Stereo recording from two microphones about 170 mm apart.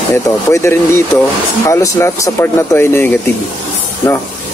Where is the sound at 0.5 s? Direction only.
15° left (ahead or behind).